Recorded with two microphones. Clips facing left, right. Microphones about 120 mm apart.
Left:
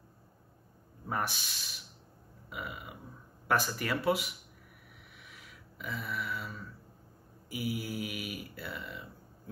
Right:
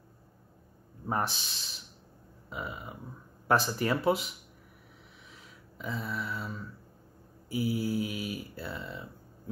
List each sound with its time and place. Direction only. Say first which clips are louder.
1.0 s speech: right 3 dB; 25° right (ahead or behind)
2.5 s mantra: right 3 dB; 30° right (ahead or behind)
5.3 s a sound: right 1 dB; 25° right (ahead or behind)
7.4 s mantra: right 6 dB; 30° right (ahead or behind)